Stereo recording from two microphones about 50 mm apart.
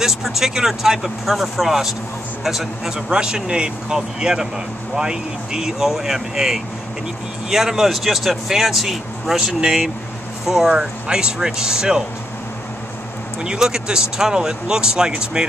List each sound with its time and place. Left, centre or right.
0.0 s speech: centre
3.1 s speech: centre
13.4 s speech: centre